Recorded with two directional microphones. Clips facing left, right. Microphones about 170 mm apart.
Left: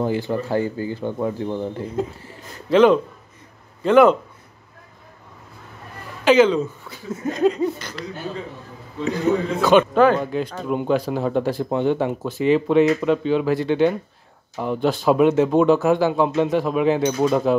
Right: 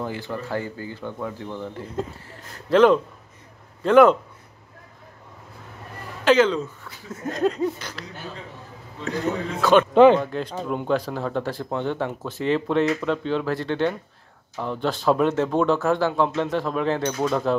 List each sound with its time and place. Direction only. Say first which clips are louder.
0.0 s speech: left 7 dB; 20° left (ahead or behind)
2.7 s laughter: left 2 dB; centre (ahead or behind)
6.2 s speech: left 3 dB; 10° left (ahead or behind)
7.2 s laughter: left 3 dB; centre (ahead or behind)
9.6 s laughter: left 1 dB; 5° left (ahead or behind)
10.1 s speech: left 1 dB; 5° left (ahead or behind)